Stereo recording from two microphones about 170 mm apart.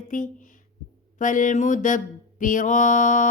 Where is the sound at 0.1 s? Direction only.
50° left (ahead or behind).